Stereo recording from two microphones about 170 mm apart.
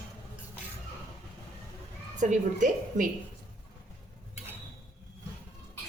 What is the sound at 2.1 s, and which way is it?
Speech, 50° right (ahead or behind).